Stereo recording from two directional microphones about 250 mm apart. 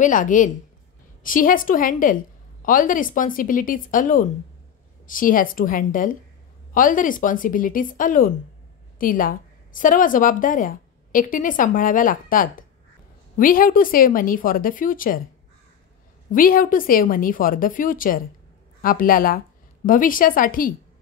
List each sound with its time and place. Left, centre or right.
0.0 s a woman's voice: left
16.3 s a woman's voice: left